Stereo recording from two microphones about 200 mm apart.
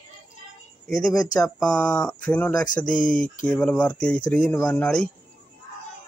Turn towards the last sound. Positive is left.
turn(degrees=5)  # may be behind; listen again after turning